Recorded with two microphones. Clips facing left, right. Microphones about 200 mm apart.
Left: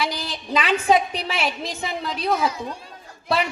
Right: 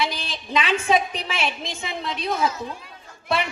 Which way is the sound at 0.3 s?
35° left (ahead or behind).